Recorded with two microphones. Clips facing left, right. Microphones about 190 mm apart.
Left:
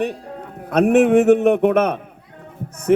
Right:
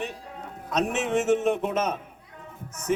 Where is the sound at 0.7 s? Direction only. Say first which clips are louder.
Left 12 dB; 60° left (ahead or behind).